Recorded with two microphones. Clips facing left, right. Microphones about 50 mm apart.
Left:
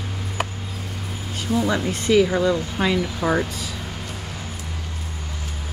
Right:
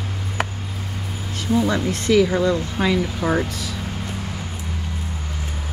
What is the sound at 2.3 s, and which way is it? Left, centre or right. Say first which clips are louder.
Speech: right 1 dB; centre.